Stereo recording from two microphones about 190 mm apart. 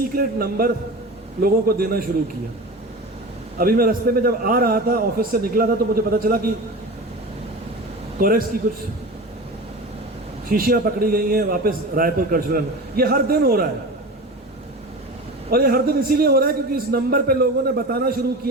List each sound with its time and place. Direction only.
0.1 s a man's voice: 50° right (ahead or behind)
3.6 s a man's voice: 50° right (ahead or behind)
8.2 s a man's voice: 50° right (ahead or behind)
10.5 s a man's voice: 50° right (ahead or behind)
15.4 s a man's voice: 50° right (ahead or behind)